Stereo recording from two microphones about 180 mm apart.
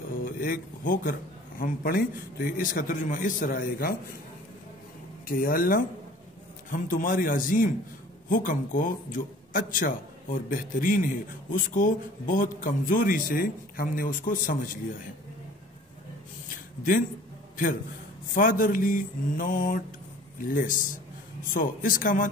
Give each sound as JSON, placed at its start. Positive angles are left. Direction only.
{"t": 0.2, "sound": "a sound", "side_deg": 50}
{"t": 1.6, "sound": "a man's voice", "side_deg": 50}
{"t": 5.3, "sound": "a man's voice", "side_deg": 50}
{"t": 18.3, "sound": "a man's voice", "side_deg": 50}